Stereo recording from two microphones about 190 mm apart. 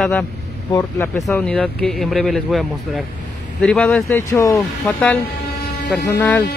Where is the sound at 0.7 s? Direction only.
15° left (ahead or behind).